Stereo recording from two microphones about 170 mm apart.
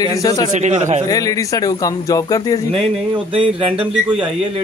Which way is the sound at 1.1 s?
20° left (ahead or behind).